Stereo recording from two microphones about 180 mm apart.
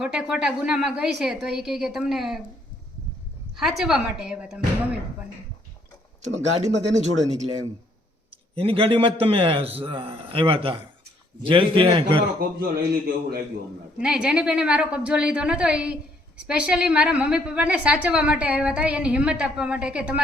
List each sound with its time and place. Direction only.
0.0 s a woman's voice: 5° right (ahead or behind)
3.5 s a woman's voice: centre (ahead or behind)
6.2 s speech: 40° right (ahead or behind)
8.5 s a man's voice: 30° right (ahead or behind)
12.4 s a man's voice: 60° right (ahead or behind)
14.0 s a woman's voice: 5° right (ahead or behind)